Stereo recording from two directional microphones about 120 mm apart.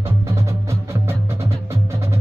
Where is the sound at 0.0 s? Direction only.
25° right (ahead or behind).